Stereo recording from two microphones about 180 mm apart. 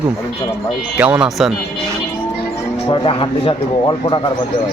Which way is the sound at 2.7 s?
30° left (ahead or behind).